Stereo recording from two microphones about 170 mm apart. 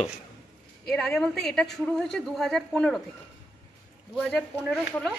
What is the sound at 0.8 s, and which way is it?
A woman's voice, 5° left (ahead or behind).